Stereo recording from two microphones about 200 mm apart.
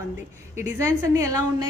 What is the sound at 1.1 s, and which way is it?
Speech, 15° right (ahead or behind).